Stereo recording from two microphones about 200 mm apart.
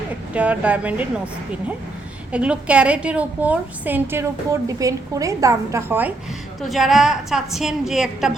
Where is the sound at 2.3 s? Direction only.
5° right (ahead or behind).